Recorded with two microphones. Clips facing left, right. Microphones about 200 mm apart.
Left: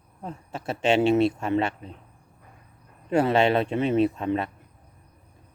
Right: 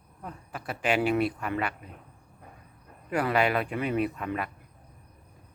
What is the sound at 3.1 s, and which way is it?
Speech, 25° left (ahead or behind).